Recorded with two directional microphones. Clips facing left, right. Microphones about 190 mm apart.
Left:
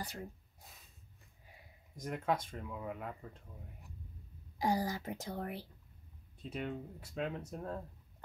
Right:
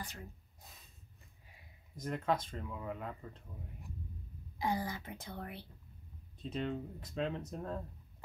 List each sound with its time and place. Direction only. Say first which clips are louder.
2.0 s speech: right 1 dB; 10° left (ahead or behind)
4.6 s speech: left 3 dB; 40° left (ahead or behind)
6.3 s speech: right 3 dB; 10° left (ahead or behind)